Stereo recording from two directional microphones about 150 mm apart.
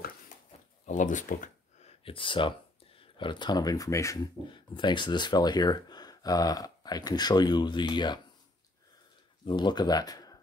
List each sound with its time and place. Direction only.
0.8 s speech: 55° left (ahead or behind); by 4.3 s 20° left (ahead or behind)
4.5 s speech: 30° left (ahead or behind)
9.5 s speech: 30° left (ahead or behind)